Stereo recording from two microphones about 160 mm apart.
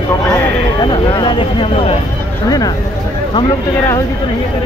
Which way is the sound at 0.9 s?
30° left (ahead or behind).